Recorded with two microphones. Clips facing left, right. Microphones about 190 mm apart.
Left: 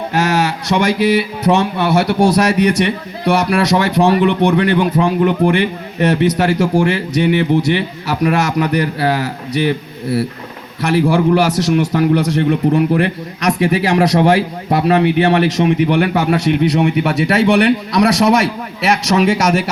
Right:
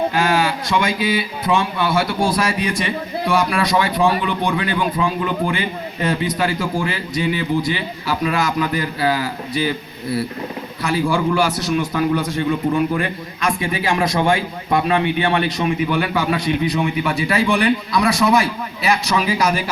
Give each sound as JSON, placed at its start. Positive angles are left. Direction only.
{"t": 0.7, "sound": "a man's voice", "side_deg": 70}